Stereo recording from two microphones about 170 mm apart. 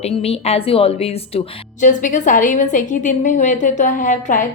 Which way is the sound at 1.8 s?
50° left (ahead or behind).